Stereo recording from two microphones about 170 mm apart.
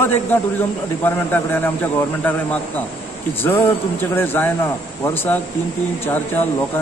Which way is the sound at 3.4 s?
10° left (ahead or behind).